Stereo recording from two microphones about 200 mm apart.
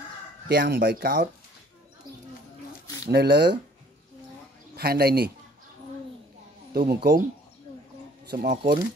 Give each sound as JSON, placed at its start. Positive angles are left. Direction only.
{"t": 0.5, "sound": "speech", "side_deg": -50}
{"t": 3.1, "sound": "speech", "side_deg": -55}
{"t": 4.7, "sound": "speech", "side_deg": -50}
{"t": 6.7, "sound": "speech", "side_deg": -50}
{"t": 8.3, "sound": "speech", "side_deg": -50}